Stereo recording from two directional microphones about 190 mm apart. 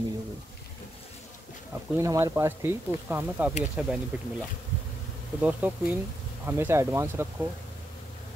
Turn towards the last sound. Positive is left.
turn(degrees=-10)  # may be behind; listen again after turning